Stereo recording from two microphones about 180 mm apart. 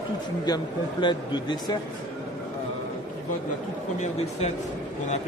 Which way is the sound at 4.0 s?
35° left (ahead or behind).